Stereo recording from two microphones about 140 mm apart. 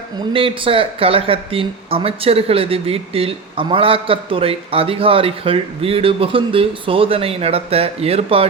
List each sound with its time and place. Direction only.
0.3 s speech: 40° right (ahead or behind)